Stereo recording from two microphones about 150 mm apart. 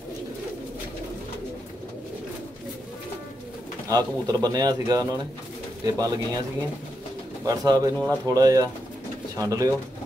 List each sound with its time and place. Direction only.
3.9 s speech: 25° right (ahead or behind)
7.4 s speech: 25° right (ahead or behind)